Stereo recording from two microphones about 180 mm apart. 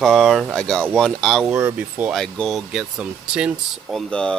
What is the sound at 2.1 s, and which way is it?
Speech, 5° left (ahead or behind).